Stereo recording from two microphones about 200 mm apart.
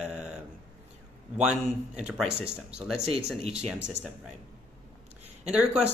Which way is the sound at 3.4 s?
30° right (ahead or behind).